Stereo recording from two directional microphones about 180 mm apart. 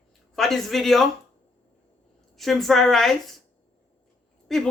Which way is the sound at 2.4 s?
Centre (ahead or behind).